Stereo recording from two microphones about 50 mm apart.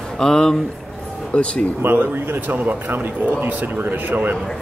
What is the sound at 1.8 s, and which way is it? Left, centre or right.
Speech, right.